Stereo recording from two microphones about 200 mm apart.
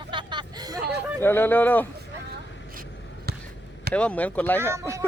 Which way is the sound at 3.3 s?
50° right (ahead or behind).